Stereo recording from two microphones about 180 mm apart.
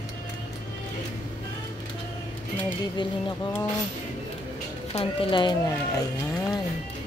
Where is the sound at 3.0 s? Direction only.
25° left (ahead or behind).